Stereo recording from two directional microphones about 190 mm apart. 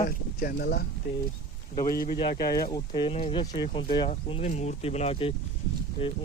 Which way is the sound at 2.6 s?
25° left (ahead or behind).